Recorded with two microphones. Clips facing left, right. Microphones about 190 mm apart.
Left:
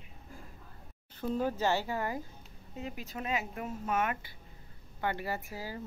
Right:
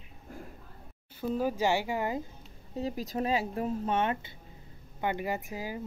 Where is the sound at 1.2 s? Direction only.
10° right (ahead or behind).